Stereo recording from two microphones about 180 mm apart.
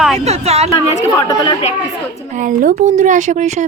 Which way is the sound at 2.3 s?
45° right (ahead or behind).